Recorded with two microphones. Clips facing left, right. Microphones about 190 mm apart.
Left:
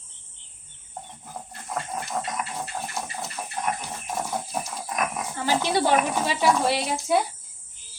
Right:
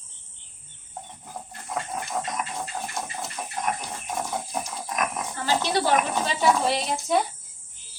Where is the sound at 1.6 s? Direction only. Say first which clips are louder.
Even; centre (ahead or behind).